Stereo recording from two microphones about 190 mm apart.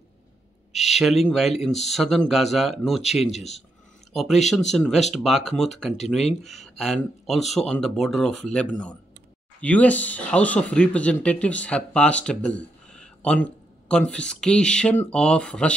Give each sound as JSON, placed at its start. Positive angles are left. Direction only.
{"t": 0.7, "sound": "speech", "side_deg": 0}
{"t": 3.3, "sound": "speech", "side_deg": 35}
{"t": 4.1, "sound": "speech", "side_deg": 0}